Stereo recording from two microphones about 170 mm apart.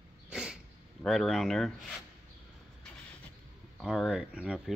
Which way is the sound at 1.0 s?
Centre (ahead or behind).